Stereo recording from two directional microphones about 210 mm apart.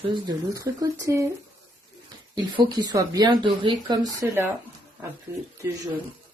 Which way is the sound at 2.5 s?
20° right (ahead or behind).